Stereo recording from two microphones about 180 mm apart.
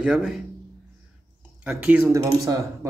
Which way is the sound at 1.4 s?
10° right (ahead or behind).